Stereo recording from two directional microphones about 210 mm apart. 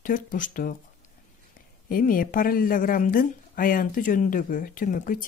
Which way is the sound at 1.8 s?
40° left (ahead or behind).